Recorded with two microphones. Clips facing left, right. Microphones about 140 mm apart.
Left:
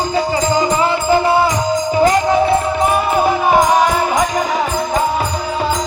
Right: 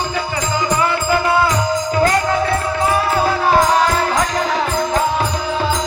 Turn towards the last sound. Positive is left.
turn(degrees=0)  # may be behind; listen again after turning